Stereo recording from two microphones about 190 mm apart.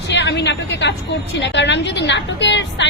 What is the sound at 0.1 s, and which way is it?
Speech, 65° left (ahead or behind).